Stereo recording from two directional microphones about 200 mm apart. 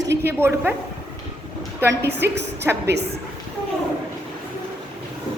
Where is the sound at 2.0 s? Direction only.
55° right (ahead or behind).